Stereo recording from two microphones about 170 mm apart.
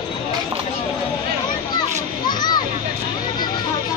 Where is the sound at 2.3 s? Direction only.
25° left (ahead or behind).